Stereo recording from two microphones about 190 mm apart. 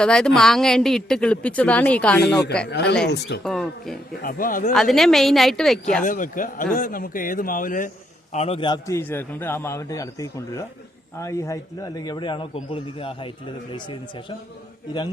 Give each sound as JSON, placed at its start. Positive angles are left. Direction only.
{"t": 0.0, "sound": "a woman's voice", "side_deg": 5}
{"t": 2.6, "sound": "speech", "side_deg": 60}
{"t": 3.4, "sound": "a woman's voice", "side_deg": 5}
{"t": 4.2, "sound": "a man's voice", "side_deg": 45}
{"t": 4.7, "sound": "a woman's voice", "side_deg": 0}
{"t": 6.0, "sound": "a man's voice", "side_deg": 45}
{"t": 8.3, "sound": "a man's voice", "side_deg": 35}